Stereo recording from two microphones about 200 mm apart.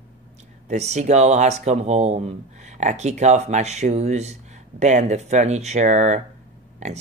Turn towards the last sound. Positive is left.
turn(degrees=-35)  # may be behind; listen again after turning